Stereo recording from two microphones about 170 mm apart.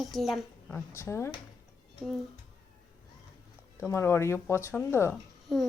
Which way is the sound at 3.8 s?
15° left (ahead or behind).